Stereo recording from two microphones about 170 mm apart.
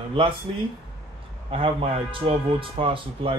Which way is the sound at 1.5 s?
35° right (ahead or behind).